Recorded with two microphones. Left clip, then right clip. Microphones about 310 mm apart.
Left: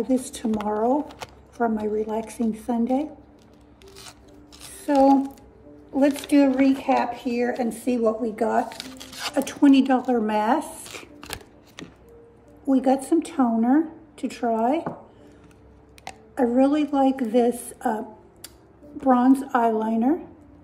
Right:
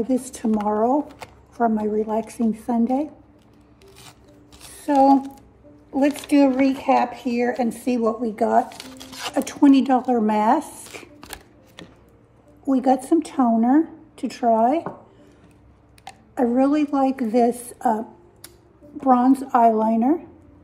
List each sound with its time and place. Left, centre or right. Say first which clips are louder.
0.1 s speech: right 2 dB; right
4.6 s speech: right 2 dB; right
12.6 s speech: right 2 dB; right
16.3 s speech: right 1 dB; right